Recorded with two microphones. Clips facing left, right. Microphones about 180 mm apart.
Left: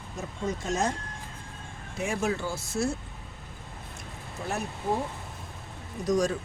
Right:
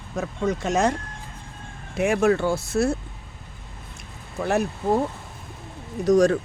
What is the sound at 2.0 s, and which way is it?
Speech, 70° right (ahead or behind).